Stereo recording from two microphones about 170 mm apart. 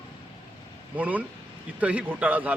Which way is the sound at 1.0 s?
10° right (ahead or behind).